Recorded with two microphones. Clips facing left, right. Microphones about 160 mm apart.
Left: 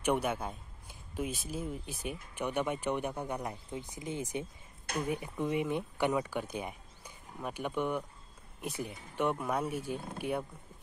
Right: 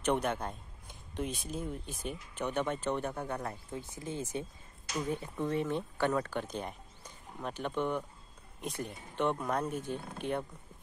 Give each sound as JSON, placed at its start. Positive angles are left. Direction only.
{"t": 0.0, "sound": "speech", "side_deg": 10}